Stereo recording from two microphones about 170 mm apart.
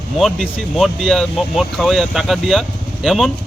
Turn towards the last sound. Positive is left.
turn(degrees=0)  # may be behind; listen again after turning